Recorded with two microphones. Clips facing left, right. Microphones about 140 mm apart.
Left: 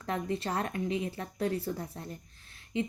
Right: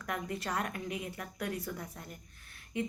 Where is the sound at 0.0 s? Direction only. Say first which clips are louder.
Left 4 dB; 25° left (ahead or behind).